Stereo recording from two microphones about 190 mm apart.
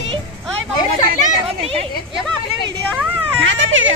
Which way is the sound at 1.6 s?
30° right (ahead or behind).